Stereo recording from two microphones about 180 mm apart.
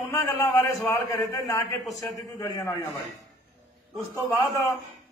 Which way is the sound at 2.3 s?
15° left (ahead or behind).